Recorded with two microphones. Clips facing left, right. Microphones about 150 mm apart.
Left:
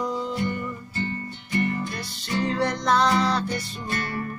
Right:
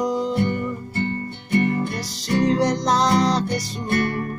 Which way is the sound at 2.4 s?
40° right (ahead or behind).